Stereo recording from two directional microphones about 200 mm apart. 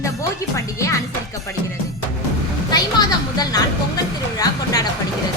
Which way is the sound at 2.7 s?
20° left (ahead or behind).